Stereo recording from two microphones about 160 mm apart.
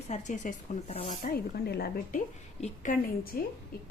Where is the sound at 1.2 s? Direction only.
75° left (ahead or behind).